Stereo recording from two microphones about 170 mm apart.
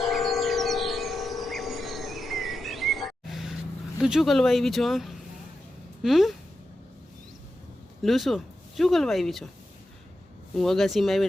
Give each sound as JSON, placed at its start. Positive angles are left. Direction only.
{"t": 0.0, "sound": "civil defense siren", "side_deg": 0}
{"t": 4.0, "sound": "speech", "side_deg": 0}
{"t": 8.0, "sound": "speech", "side_deg": 0}
{"t": 10.5, "sound": "speech", "side_deg": 0}